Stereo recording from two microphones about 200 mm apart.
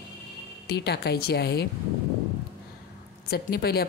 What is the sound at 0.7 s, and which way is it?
A woman's voice, 55° left (ahead or behind).